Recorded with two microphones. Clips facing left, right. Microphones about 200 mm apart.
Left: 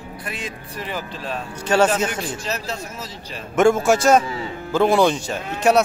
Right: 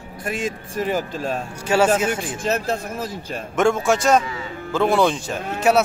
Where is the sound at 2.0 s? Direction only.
50° right (ahead or behind).